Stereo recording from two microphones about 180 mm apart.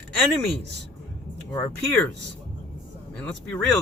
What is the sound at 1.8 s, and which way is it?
Speech, 5° left (ahead or behind).